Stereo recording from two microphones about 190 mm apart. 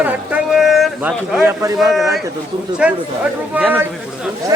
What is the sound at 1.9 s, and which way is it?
Speech, centre (ahead or behind).